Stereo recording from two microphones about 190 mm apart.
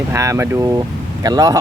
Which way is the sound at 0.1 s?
15° right (ahead or behind).